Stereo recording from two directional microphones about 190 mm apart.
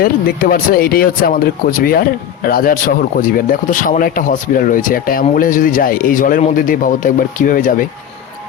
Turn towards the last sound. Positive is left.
turn(degrees=45)  # may be behind; listen again after turning